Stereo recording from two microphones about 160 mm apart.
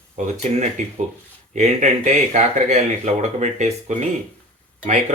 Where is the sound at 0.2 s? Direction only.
50° right (ahead or behind).